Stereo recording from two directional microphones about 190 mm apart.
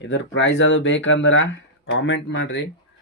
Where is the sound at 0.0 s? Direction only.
70° left (ahead or behind).